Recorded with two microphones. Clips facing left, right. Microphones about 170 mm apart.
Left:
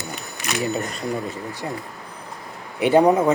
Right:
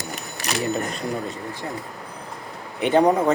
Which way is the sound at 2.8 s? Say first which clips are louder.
Left 2 dB; 10° left (ahead or behind).